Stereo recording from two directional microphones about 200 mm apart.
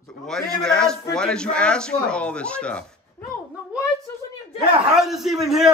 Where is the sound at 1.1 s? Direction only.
5° left (ahead or behind).